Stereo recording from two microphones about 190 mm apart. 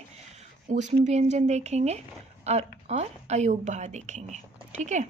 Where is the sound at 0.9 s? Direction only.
35° right (ahead or behind).